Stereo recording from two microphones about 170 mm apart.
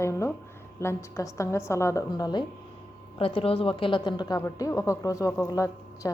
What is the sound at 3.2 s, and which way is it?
A woman's voice, 35° left (ahead or behind).